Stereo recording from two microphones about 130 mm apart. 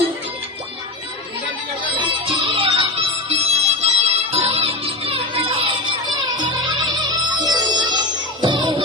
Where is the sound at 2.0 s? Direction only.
40° right (ahead or behind).